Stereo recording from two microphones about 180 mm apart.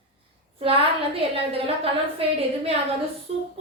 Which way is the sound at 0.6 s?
30° right (ahead or behind).